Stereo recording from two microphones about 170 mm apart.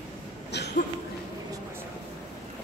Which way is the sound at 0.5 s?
80° left.